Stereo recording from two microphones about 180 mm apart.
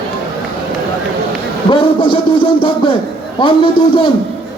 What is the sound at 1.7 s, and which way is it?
A man's voice, 30° left (ahead or behind).